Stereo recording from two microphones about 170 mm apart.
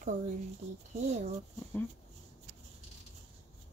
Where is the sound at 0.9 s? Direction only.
40° right (ahead or behind).